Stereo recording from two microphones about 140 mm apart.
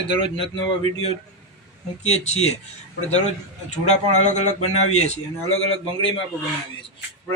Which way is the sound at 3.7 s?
55° left (ahead or behind).